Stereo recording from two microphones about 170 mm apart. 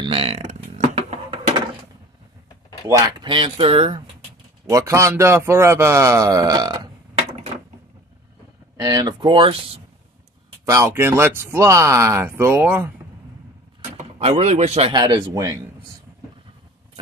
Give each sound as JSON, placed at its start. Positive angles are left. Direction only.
{"t": 0.0, "sound": "burping", "side_deg": -35}
{"t": 2.9, "sound": "speech", "side_deg": -20}
{"t": 4.6, "sound": "a man's voice", "side_deg": -20}
{"t": 8.8, "sound": "speech", "side_deg": -20}
{"t": 10.6, "sound": "a man's voice", "side_deg": -20}
{"t": 13.9, "sound": "speech", "side_deg": -40}
{"t": 14.9, "sound": "speech", "side_deg": -25}